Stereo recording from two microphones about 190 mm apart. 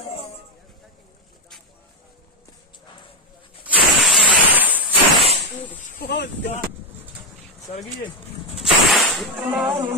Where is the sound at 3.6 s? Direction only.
5° right (ahead or behind).